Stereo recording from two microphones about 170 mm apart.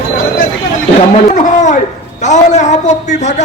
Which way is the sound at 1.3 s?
45° left (ahead or behind).